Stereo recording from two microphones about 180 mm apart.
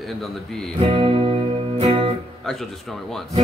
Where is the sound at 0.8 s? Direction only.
30° right (ahead or behind).